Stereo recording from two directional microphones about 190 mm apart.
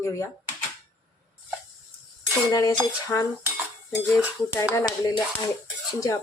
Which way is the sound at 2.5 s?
20° left (ahead or behind).